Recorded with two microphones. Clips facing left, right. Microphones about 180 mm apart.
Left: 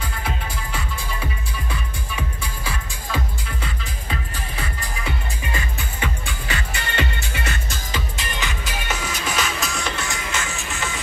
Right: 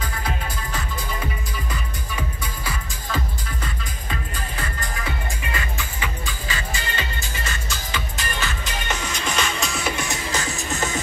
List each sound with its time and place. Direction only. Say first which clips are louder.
1.7 s music: even; 5° left (ahead or behind)
5.8 s music: left 2 dB; 60° left (ahead or behind)
8.2 s music: even; 20° left (ahead or behind); by 9.9 s centre (ahead or behind)
9.9 s music: right 1 dB; 20° right (ahead or behind)
10.3 s music: right 2 dB; 35° right (ahead or behind)